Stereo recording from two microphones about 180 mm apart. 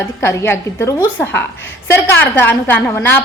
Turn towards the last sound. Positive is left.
turn(degrees=10)  # may be behind; listen again after turning